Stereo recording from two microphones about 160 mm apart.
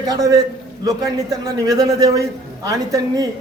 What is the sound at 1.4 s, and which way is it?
A man's voice, 25° right (ahead or behind).